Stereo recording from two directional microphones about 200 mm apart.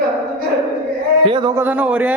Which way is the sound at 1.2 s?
25° right (ahead or behind).